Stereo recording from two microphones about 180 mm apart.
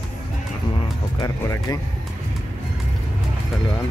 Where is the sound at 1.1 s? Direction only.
20° left (ahead or behind).